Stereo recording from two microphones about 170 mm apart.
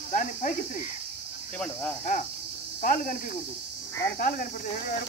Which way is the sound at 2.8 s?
50° left (ahead or behind).